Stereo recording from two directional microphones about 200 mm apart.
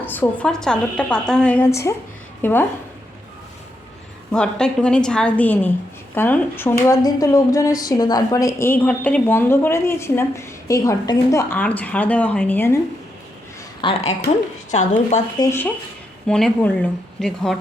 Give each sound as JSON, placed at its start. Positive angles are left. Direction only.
{"t": 0.0, "sound": "a woman's voice", "side_deg": 10}
{"t": 4.3, "sound": "a woman's voice", "side_deg": 5}
{"t": 13.8, "sound": "a woman's voice", "side_deg": 30}
{"t": 15.4, "sound": "a woman's voice", "side_deg": 10}